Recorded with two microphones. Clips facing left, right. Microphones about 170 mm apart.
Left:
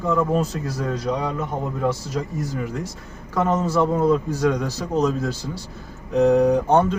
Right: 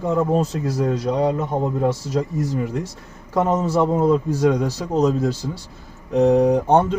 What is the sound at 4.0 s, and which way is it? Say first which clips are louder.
Speech: right 2 dB; 25° right (ahead or behind).